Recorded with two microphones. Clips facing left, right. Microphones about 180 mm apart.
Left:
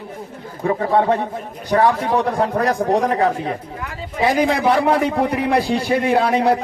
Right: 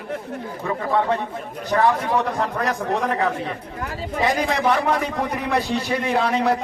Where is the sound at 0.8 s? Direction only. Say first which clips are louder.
Left 4 dB; 40° left (ahead or behind).